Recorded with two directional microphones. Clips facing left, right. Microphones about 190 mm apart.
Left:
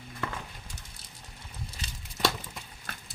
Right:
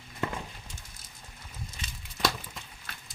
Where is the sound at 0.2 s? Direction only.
20° right (ahead or behind).